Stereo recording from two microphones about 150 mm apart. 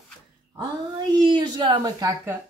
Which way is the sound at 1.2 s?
30° right (ahead or behind).